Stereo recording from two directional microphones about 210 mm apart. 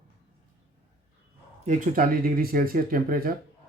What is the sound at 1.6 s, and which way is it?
Speech, 35° right (ahead or behind).